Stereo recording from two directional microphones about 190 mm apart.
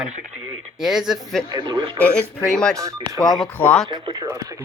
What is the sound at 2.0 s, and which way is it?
Speech, 10° left (ahead or behind).